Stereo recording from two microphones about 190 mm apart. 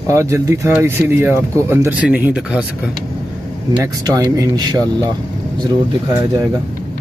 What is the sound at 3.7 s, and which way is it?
Speech, 20° right (ahead or behind).